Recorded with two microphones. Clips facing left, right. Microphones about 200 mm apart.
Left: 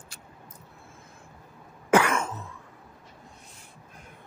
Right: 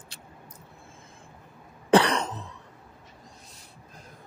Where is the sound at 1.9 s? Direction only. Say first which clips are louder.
Right 2 dB; 35° right (ahead or behind).